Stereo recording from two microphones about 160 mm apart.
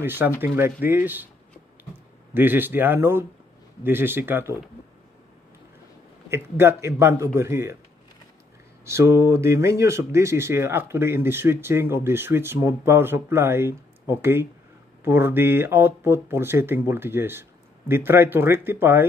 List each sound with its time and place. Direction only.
0.0 s speech: 15° right (ahead or behind)
2.3 s speech: 10° right (ahead or behind)
6.3 s speech: 15° right (ahead or behind)
8.8 s speech: 15° right (ahead or behind)